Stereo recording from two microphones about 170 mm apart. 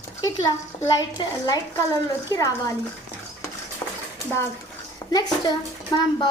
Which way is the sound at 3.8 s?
20° left (ahead or behind).